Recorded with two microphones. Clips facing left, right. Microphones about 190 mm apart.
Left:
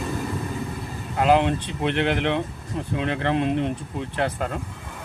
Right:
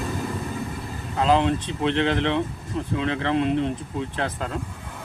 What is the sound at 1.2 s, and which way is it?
Speech, 15° left (ahead or behind).